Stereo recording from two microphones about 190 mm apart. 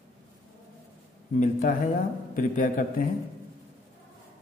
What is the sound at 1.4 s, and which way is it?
A man's voice, 40° left (ahead or behind).